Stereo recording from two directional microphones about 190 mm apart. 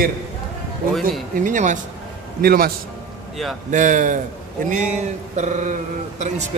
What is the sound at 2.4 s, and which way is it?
Speech, 50° right (ahead or behind).